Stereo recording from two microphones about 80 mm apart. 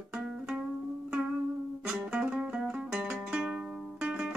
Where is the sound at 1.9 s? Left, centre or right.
Centre.